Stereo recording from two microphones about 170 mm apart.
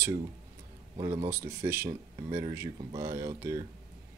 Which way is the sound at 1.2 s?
15° right (ahead or behind).